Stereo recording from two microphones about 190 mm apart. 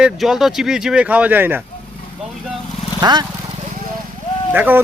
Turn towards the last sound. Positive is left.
turn(degrees=-10)  # may be behind; listen again after turning